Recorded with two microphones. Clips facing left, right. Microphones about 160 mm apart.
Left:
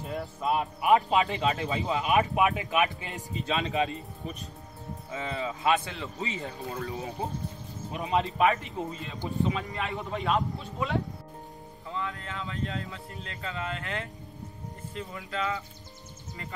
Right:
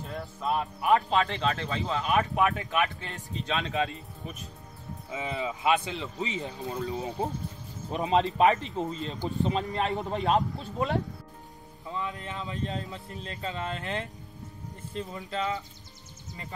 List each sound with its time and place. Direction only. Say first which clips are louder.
0.0 s speech: left 2 dB; 5° left (ahead or behind)
5.1 s speech: right 1 dB; 15° right (ahead or behind)
7.9 s speech: right 3 dB; 30° right (ahead or behind)
9.0 s speech: left 3 dB; 40° right (ahead or behind)
11.9 s speech: right 1 dB; 20° right (ahead or behind)